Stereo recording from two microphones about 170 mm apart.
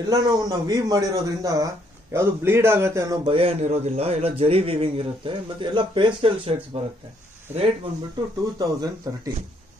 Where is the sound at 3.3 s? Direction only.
35° right (ahead or behind).